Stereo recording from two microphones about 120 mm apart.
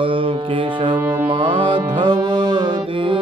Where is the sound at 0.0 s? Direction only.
45° right (ahead or behind).